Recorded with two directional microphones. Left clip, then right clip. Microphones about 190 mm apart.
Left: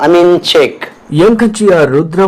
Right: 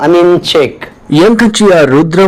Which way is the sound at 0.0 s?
Centre (ahead or behind).